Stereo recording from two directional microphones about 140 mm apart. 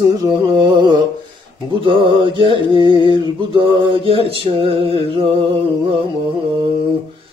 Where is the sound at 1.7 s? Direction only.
35° right (ahead or behind).